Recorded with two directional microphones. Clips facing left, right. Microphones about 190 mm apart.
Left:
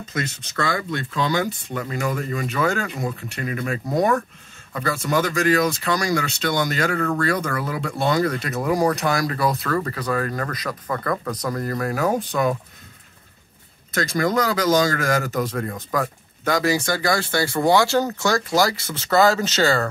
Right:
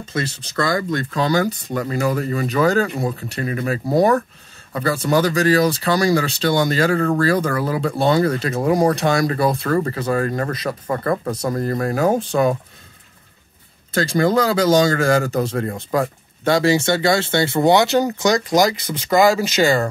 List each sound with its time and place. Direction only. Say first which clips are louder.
0.0 s speech: right 3 dB; 30° right (ahead or behind)
13.9 s speech: right 4 dB; 30° right (ahead or behind)